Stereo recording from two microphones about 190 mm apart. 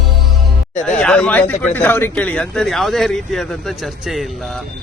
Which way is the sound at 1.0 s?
5° left (ahead or behind).